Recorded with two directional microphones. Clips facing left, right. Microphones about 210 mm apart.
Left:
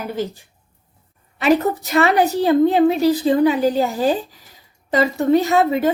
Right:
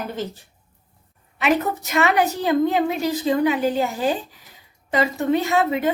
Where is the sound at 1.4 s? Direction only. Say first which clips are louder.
Left 5 dB; 35° left (ahead or behind).